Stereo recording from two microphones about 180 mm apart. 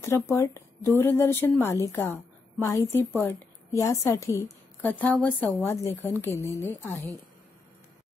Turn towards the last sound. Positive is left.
turn(degrees=10)  # may be behind; listen again after turning